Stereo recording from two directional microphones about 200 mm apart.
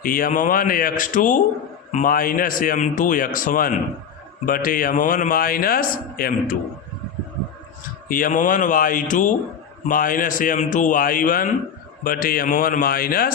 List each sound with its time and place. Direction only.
0.0 s a man's voice: 45° left (ahead or behind)
8.0 s a man's voice: 45° left (ahead or behind)